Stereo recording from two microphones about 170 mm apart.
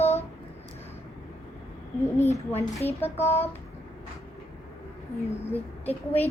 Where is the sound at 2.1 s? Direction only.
15° left (ahead or behind).